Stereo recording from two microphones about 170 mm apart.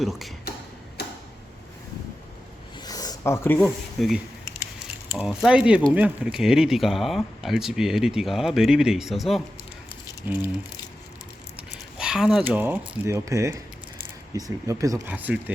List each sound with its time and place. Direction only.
0.0 s speech: centre (ahead or behind)
1.0 s tick-tock: 70° left (ahead or behind)
2.8 s a sound: 20° left (ahead or behind)
3.6 s speech: centre (ahead or behind)
10.2 s speech: 10° right (ahead or behind)
11.7 s speech: 5° right (ahead or behind)